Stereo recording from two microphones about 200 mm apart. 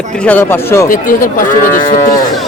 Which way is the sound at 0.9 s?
45° left (ahead or behind).